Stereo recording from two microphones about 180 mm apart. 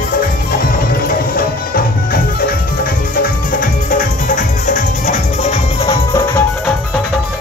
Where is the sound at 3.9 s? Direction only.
45° left (ahead or behind).